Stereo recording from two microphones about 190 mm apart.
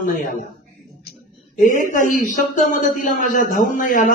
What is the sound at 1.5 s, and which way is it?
Speech, 45° left (ahead or behind).